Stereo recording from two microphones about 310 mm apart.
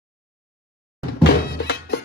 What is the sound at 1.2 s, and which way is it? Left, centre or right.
Music, left.